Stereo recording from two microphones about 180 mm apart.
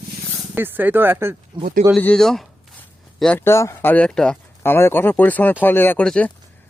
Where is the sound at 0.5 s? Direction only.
10° right (ahead or behind).